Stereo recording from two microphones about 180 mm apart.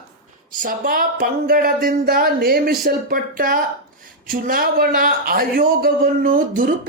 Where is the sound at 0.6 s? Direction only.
50° right (ahead or behind).